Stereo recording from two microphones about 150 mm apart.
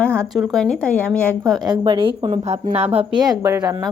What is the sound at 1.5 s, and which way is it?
A woman's voice, 30° right (ahead or behind).